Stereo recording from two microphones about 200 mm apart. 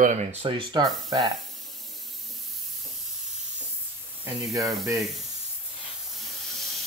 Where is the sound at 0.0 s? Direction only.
35° right (ahead or behind).